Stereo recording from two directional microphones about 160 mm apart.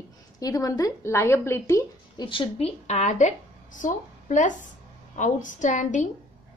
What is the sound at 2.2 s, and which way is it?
A woman's voice, 30° left (ahead or behind).